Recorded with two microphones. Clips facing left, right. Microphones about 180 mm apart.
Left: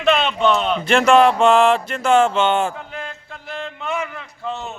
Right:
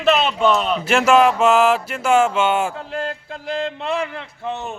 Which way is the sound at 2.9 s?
35° right (ahead or behind).